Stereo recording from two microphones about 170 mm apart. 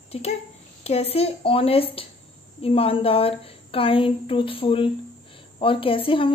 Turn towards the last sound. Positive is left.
turn(degrees=30)  # may be behind; listen again after turning